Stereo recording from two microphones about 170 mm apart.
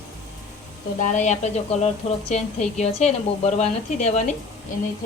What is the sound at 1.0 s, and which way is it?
A woman's voice, 45° left (ahead or behind).